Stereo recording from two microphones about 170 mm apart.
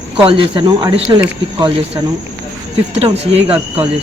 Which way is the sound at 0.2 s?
30° right (ahead or behind).